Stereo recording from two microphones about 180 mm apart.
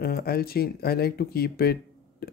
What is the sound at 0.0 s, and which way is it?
Speech, 60° left (ahead or behind).